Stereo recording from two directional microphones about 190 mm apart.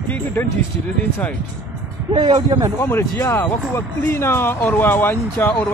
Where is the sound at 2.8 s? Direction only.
15° left (ahead or behind).